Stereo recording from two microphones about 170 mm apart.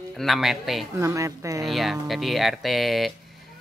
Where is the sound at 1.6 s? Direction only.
Centre (ahead or behind).